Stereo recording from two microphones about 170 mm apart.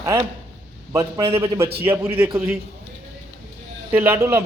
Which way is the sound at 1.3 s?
35° right (ahead or behind).